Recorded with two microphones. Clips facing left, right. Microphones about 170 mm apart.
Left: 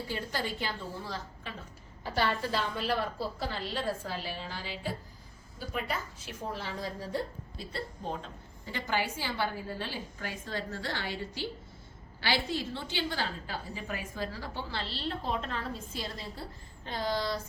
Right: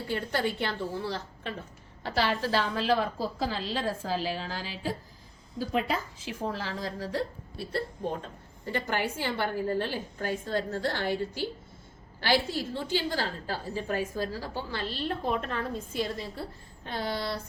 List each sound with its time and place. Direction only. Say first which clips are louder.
0.1 s a woman's voice: right 7 dB; 60° right (ahead or behind)
2.0 s a woman's voice: right 3 dB; 80° right
8.6 s a woman's voice: right 3 dB; 55° right (ahead or behind)